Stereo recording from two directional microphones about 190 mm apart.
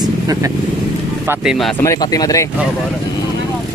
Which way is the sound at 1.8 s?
20° left (ahead or behind).